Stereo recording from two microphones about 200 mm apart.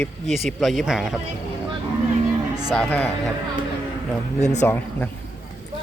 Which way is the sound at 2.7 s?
5° left (ahead or behind).